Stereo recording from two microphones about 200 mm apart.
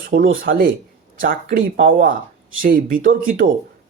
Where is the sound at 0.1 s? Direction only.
35° right (ahead or behind).